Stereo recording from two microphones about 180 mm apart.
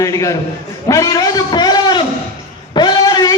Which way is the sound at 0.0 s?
20° left (ahead or behind).